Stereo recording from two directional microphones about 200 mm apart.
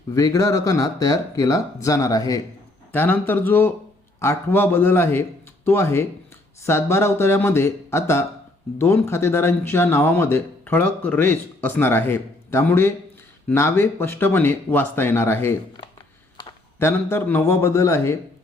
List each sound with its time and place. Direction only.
0.1 s speech: 15° left (ahead or behind)